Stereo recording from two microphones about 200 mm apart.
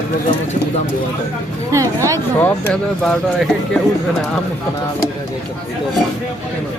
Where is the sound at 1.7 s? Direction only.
15° right (ahead or behind).